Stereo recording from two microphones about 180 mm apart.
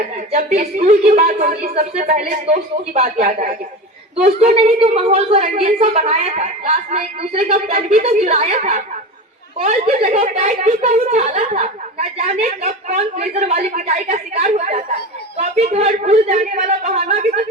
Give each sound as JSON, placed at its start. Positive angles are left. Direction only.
{"t": 0.5, "sound": "a woman's voice", "side_deg": -40}